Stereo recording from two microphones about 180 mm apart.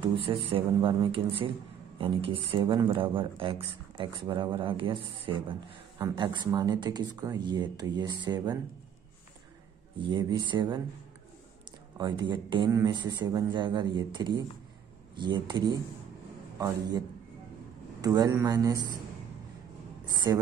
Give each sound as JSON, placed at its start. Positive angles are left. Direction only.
{"t": 0.0, "sound": "speech", "side_deg": -30}
{"t": 9.9, "sound": "speech", "side_deg": -25}
{"t": 12.0, "sound": "a man's voice", "side_deg": -25}
{"t": 18.0, "sound": "speech", "side_deg": -20}
{"t": 20.2, "sound": "speech", "side_deg": -20}